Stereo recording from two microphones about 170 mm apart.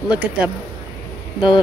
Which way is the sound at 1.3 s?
25° left (ahead or behind).